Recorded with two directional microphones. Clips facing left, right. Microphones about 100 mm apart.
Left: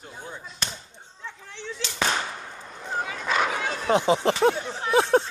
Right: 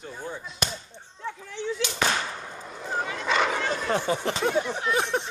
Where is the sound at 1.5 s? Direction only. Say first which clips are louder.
Right 6 dB; 5° right (ahead or behind).